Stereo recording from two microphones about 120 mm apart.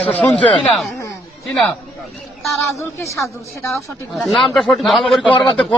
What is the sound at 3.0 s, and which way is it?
Speech, 25° left (ahead or behind).